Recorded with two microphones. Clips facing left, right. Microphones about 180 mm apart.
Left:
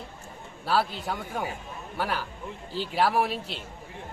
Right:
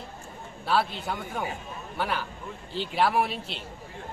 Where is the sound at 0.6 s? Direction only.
5° left (ahead or behind).